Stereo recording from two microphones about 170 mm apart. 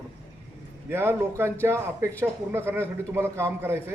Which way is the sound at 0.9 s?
15° right (ahead or behind).